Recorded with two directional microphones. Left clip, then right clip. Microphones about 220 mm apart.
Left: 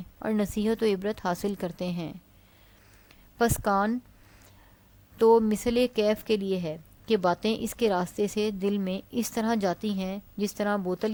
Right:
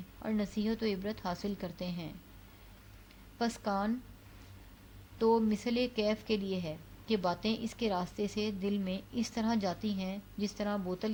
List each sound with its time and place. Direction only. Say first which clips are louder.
0.2 s speech: left 8 dB; 45° left (ahead or behind)
3.3 s speech: left 10 dB; 45° left (ahead or behind)
5.1 s speech: left 9 dB; 45° left (ahead or behind)